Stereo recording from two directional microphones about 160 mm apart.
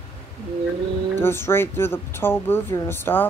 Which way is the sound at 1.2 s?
15° left (ahead or behind).